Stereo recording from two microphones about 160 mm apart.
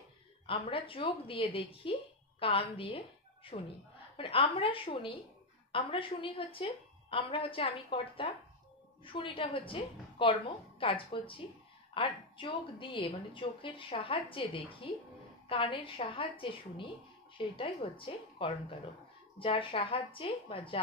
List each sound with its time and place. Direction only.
0.5 s a woman's voice: 35° left (ahead or behind)